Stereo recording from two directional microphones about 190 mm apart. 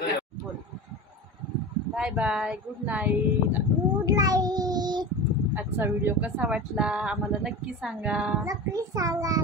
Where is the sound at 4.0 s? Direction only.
20° right (ahead or behind).